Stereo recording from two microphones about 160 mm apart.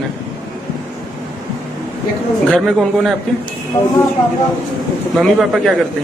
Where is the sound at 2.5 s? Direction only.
Centre (ahead or behind).